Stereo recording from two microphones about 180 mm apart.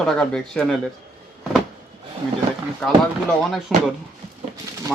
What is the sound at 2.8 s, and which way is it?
Speech, centre (ahead or behind).